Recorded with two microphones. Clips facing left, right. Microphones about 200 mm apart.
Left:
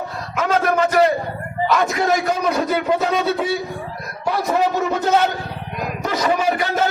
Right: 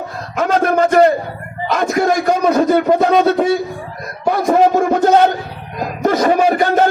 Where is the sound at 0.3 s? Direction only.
45° right (ahead or behind).